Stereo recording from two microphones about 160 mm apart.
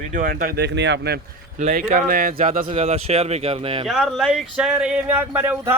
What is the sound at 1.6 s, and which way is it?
Speech, 50° right (ahead or behind).